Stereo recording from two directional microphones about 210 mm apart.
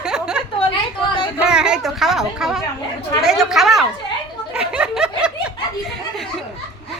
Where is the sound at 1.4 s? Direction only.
5° right (ahead or behind).